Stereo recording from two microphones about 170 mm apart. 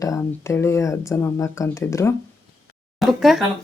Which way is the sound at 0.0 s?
15° left (ahead or behind).